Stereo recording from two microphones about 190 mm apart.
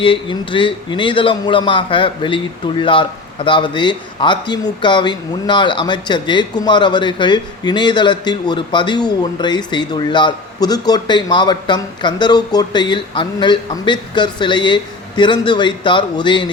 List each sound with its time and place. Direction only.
0.0 s speech: 25° left (ahead or behind)